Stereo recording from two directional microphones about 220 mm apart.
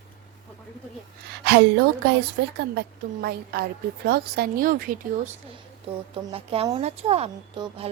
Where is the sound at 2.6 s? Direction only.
45° right (ahead or behind).